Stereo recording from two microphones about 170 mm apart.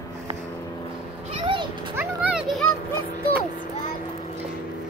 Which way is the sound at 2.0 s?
5° right (ahead or behind).